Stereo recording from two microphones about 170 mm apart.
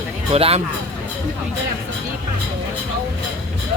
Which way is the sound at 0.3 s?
35° right (ahead or behind).